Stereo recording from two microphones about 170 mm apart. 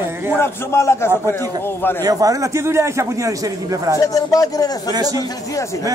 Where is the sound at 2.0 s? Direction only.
20° right (ahead or behind).